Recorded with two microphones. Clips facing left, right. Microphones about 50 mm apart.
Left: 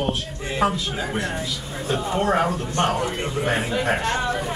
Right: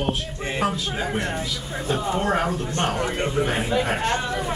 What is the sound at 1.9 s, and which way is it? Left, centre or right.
Speech, left.